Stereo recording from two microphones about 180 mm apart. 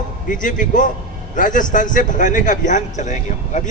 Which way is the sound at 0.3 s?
45° left (ahead or behind).